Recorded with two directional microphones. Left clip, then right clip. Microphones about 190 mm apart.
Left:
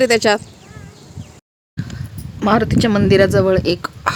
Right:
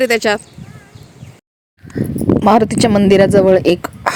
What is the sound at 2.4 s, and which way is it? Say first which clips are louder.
Speech: right 3 dB; 25° right (ahead or behind).